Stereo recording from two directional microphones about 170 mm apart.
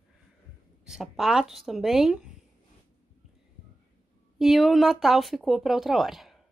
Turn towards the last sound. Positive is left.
turn(degrees=0)  # may be behind; listen again after turning